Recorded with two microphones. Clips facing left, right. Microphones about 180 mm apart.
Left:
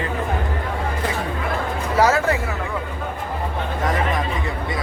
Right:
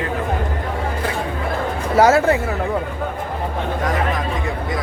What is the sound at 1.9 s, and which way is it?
Speech, 40° right (ahead or behind).